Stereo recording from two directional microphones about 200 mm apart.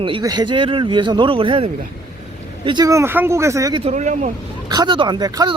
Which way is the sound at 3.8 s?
35° right (ahead or behind).